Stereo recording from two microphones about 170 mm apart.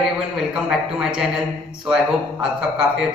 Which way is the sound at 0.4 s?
Centre (ahead or behind).